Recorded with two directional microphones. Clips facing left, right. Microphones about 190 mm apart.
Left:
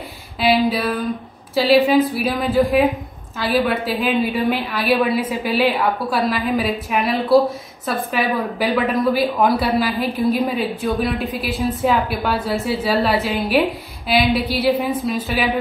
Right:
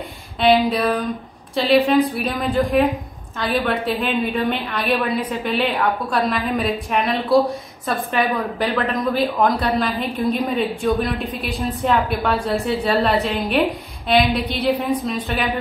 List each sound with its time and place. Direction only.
0.7 s a woman's voice: centre (ahead or behind)